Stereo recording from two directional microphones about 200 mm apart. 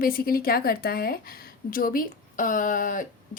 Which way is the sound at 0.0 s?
45° left (ahead or behind).